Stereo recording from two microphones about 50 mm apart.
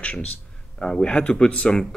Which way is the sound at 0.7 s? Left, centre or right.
Centre.